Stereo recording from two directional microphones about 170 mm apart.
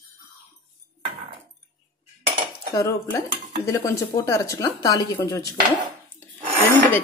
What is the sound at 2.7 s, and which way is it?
A woman's voice, 20° left (ahead or behind).